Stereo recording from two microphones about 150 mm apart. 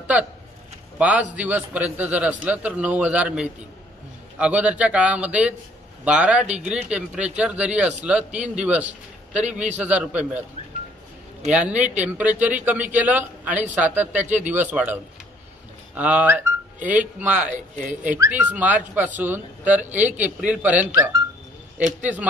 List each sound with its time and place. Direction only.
0.1 s a man's voice: 10° right (ahead or behind)
11.5 s speech: 10° right (ahead or behind)
16.0 s speech: 10° right (ahead or behind)
22.0 s speech: 10° right (ahead or behind)